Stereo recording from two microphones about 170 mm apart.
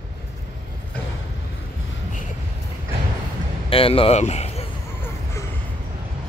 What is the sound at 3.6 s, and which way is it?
Speech, 35° left (ahead or behind).